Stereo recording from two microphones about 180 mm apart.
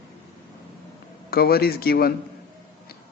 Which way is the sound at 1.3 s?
60° left (ahead or behind).